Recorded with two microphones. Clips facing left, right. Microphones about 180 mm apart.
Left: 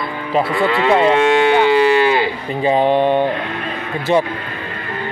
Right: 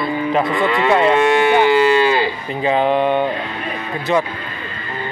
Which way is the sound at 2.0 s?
20° left (ahead or behind).